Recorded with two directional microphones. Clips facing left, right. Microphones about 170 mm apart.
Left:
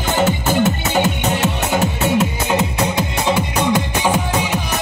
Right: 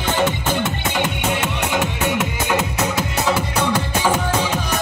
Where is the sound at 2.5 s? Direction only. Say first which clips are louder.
Left 1 dB; 20° left (ahead or behind).